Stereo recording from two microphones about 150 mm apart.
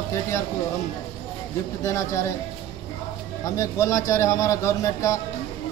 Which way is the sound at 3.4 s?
20° left (ahead or behind).